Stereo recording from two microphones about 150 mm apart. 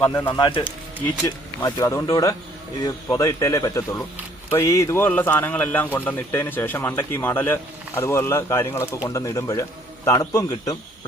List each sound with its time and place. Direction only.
0.1 s speech: 15° left (ahead or behind)
0.3 s a man's voice: 30° left (ahead or behind)